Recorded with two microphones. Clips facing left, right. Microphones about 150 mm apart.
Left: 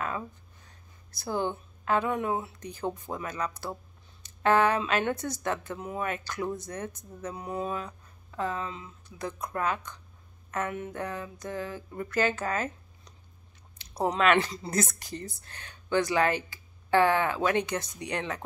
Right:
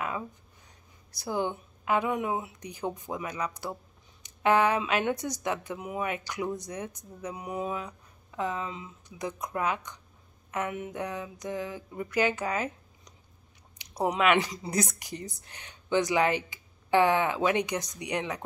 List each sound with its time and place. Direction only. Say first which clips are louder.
0.7 s speech: even; 15° right (ahead or behind)